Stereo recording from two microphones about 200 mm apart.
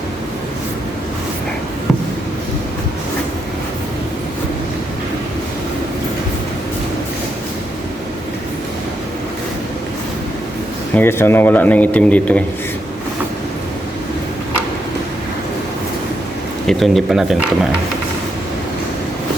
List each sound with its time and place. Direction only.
10.9 s speech: 10° left (ahead or behind)
16.6 s speech: centre (ahead or behind)